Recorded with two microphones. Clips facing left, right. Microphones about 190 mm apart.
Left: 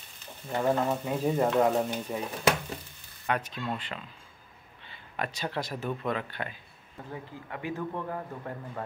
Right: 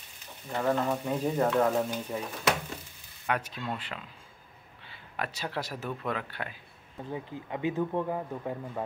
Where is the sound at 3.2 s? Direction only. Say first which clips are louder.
Left 1 dB; 5° right (ahead or behind).